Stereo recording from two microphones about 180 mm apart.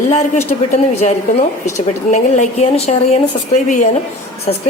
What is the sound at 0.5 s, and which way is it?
Speech, 40° left (ahead or behind).